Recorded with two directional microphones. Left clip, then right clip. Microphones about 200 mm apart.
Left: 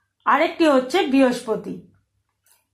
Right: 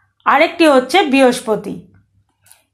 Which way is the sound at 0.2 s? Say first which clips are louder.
Right 6 dB; 30° right (ahead or behind).